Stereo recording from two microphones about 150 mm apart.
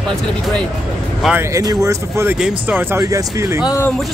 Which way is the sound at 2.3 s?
10° right (ahead or behind).